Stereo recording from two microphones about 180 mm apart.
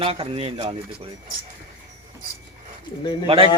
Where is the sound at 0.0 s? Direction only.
30° right (ahead or behind).